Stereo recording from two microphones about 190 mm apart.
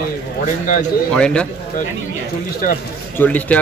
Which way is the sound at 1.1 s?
5° left (ahead or behind).